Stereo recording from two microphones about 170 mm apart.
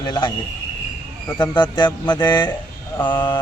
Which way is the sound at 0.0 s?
25° left (ahead or behind).